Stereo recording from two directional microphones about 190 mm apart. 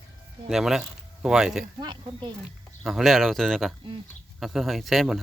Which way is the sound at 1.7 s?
25° right (ahead or behind).